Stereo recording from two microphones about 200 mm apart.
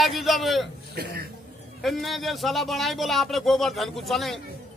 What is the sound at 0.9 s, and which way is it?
Speech, 50° right (ahead or behind).